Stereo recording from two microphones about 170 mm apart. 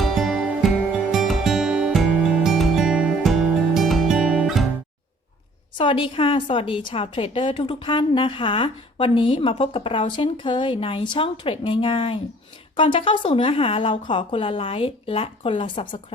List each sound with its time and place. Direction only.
0.0 s music: centre (ahead or behind)
5.7 s a woman's voice: 30° left (ahead or behind)